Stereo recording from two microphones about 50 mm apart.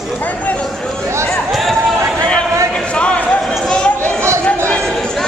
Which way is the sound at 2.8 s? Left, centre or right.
Left.